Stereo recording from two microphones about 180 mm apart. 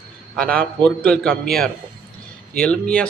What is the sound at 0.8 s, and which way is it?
A man's voice, 5° left (ahead or behind).